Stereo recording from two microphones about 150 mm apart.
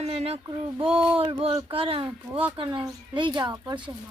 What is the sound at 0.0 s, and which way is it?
Speech, 45° right (ahead or behind).